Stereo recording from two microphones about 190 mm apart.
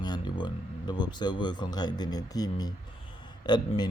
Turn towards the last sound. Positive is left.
turn(degrees=20)  # may be behind; listen again after turning